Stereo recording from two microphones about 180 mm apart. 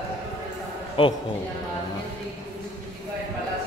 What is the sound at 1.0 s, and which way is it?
Speech, 30° left (ahead or behind).